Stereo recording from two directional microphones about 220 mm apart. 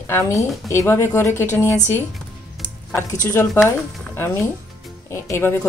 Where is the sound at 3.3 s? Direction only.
10° left (ahead or behind).